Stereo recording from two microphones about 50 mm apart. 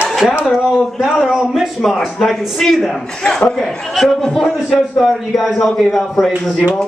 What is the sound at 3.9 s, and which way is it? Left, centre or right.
A man's voice, centre.